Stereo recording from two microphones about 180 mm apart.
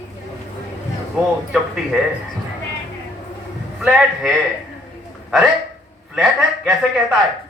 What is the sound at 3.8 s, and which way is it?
Speech, 5° right (ahead or behind).